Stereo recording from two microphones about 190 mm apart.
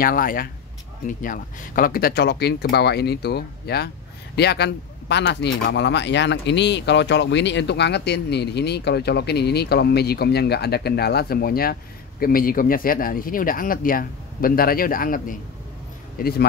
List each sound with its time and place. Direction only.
0.0 s speech: 50° left (ahead or behind)